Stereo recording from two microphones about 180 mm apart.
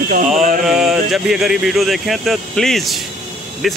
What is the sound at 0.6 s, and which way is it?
Speech, centre (ahead or behind).